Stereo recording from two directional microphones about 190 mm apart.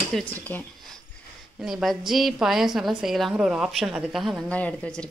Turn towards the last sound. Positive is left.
turn(degrees=5)  # may be behind; listen again after turning